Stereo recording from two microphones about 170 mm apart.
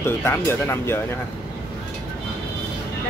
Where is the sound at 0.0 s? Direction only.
15° left (ahead or behind).